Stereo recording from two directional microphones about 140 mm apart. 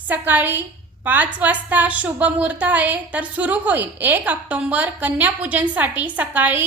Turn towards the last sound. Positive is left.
turn(degrees=-10)  # may be behind; listen again after turning